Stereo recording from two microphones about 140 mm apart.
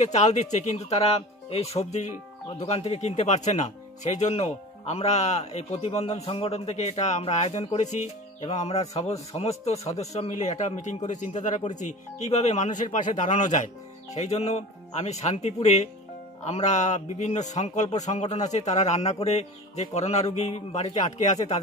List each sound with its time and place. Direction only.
0.0 s speech: 55° left (ahead or behind)